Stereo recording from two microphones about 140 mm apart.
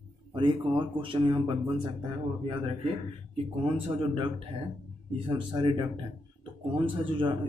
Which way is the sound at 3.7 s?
40° right (ahead or behind).